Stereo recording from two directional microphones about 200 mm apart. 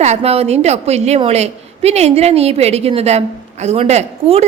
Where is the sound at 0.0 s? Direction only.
30° right (ahead or behind).